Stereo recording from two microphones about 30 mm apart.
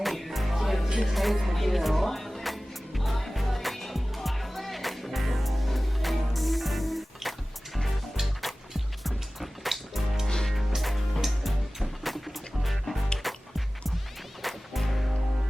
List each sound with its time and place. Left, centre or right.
0.0 s music: centre
10.2 s music: centre
10.8 s music: centre
14.4 s music: centre